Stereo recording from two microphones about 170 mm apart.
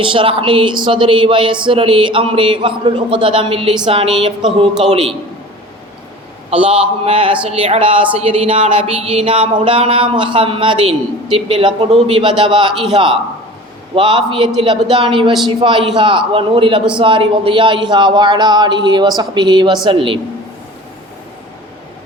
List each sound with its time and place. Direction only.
0.0 s speech: 30° right (ahead or behind)
6.7 s speech: 35° right (ahead or behind)